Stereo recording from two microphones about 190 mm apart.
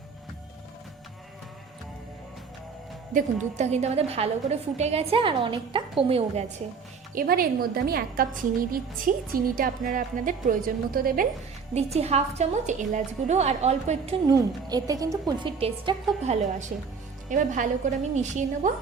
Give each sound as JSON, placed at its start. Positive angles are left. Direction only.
{"t": 3.1, "sound": "a woman's voice", "side_deg": -40}
{"t": 7.1, "sound": "speech", "side_deg": -50}
{"t": 11.7, "sound": "a woman's voice", "side_deg": -35}
{"t": 14.3, "sound": "a woman's voice", "side_deg": -20}
{"t": 15.5, "sound": "a woman's voice", "side_deg": -30}